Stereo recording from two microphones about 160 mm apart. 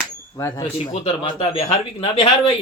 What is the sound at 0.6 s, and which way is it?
Speech, 40° left (ahead or behind).